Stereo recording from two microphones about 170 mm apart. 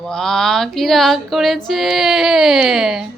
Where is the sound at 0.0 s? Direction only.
5° left (ahead or behind).